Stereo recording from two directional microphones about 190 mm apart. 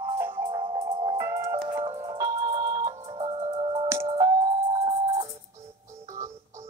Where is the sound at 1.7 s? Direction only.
30° right (ahead or behind).